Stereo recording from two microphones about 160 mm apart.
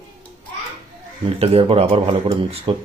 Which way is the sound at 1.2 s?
40° right (ahead or behind).